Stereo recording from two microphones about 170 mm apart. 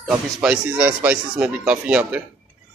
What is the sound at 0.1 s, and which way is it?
Speech, 5° right (ahead or behind).